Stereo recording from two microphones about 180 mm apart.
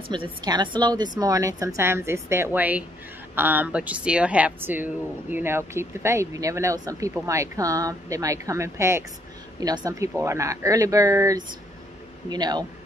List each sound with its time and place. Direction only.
0.1 s a man's voice: 25° right (ahead or behind)